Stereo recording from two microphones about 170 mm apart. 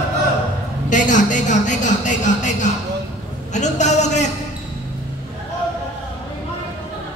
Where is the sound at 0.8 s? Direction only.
45° left (ahead or behind).